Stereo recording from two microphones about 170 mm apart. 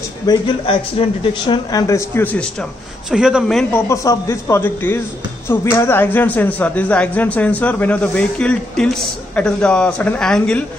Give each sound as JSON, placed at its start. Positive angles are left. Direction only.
{"t": 0.3, "sound": "a man's voice", "side_deg": 20}
{"t": 1.0, "sound": "speech", "side_deg": 35}
{"t": 3.7, "sound": "speech", "side_deg": 20}